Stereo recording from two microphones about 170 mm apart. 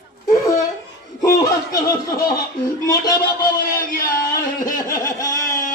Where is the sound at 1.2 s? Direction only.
20° left (ahead or behind).